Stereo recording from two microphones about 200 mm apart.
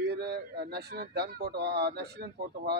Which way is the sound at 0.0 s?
55° right (ahead or behind).